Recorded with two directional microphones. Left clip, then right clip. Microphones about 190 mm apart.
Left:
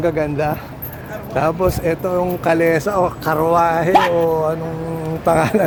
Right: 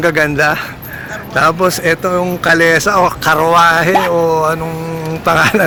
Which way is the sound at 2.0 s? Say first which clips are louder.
Right 4 dB; 10° right (ahead or behind).